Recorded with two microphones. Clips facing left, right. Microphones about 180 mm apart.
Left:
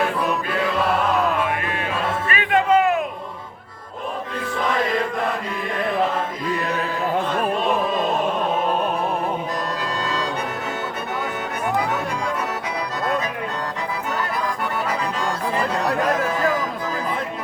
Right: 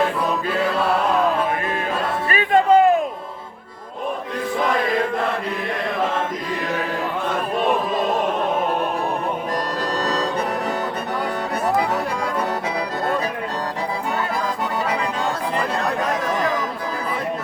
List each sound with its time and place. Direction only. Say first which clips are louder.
2.3 s music: right 3 dB; 35° right (ahead or behind)
10.0 s music: right 4 dB; 40° right (ahead or behind)